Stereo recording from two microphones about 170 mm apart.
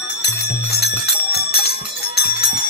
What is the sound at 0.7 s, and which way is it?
Music, 70° left (ahead or behind).